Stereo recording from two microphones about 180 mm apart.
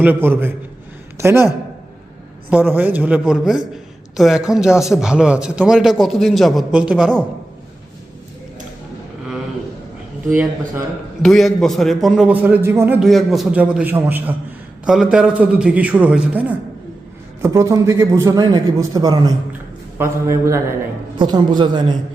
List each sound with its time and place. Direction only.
0.0 s a man's voice: 10° right (ahead or behind)
2.5 s a man's voice: 10° right (ahead or behind)
11.2 s a man's voice: centre (ahead or behind)
13.0 s a man's voice: centre (ahead or behind); by 21.9 s 25° right (ahead or behind)